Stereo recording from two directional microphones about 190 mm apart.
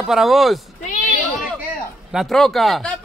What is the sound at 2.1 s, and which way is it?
Speech, centre (ahead or behind).